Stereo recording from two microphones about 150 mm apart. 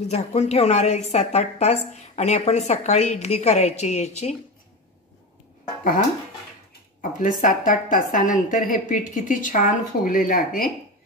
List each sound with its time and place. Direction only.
0.1 s a woman's voice: 45° left (ahead or behind)
7.0 s a woman's voice: 65° left (ahead or behind)